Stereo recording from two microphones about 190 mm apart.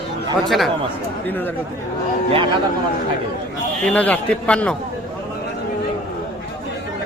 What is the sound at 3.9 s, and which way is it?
Speech, 10° left (ahead or behind).